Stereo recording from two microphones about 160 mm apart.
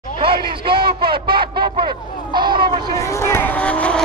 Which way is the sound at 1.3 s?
30° right (ahead or behind).